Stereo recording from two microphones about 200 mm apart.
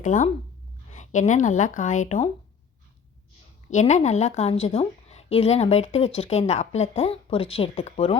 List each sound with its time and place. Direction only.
0.0 s speech: 40° left (ahead or behind)
3.7 s a woman's voice: 35° left (ahead or behind)